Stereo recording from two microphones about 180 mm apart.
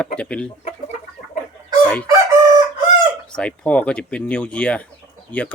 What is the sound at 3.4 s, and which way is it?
Speech, 5° left (ahead or behind).